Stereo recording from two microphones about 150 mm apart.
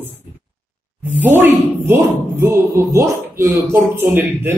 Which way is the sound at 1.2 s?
15° right (ahead or behind).